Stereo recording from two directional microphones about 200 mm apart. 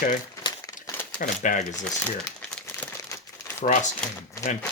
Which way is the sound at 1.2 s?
40° left (ahead or behind).